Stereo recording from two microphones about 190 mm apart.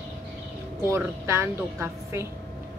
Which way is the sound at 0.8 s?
15° right (ahead or behind).